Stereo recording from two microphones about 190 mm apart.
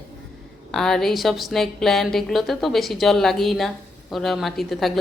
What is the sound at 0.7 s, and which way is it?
Speech, centre (ahead or behind).